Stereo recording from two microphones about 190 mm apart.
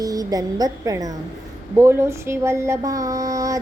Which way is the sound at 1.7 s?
15° right (ahead or behind).